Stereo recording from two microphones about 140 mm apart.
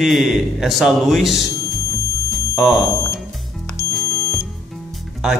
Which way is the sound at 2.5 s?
Centre (ahead or behind).